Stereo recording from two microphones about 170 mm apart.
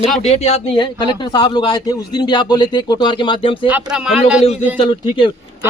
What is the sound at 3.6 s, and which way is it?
Speech, 5° right (ahead or behind).